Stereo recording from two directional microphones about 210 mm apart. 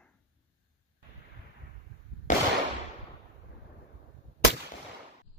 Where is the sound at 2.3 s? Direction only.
35° left (ahead or behind).